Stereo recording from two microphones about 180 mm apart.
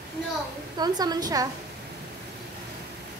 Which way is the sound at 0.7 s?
20° right (ahead or behind).